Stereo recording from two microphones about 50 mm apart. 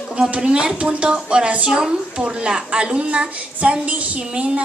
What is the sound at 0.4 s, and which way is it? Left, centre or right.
A woman's voice, centre.